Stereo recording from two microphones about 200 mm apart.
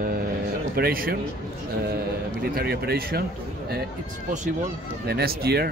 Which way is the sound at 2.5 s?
50° right (ahead or behind).